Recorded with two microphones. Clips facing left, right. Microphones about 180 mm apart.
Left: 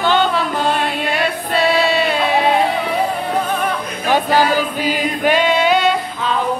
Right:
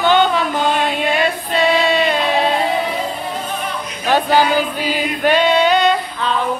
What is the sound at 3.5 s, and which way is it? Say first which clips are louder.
Music: left 5 dB; 60° left (ahead or behind).